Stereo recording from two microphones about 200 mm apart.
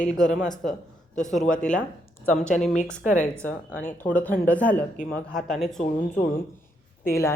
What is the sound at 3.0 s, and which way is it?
Speech, 40° left (ahead or behind).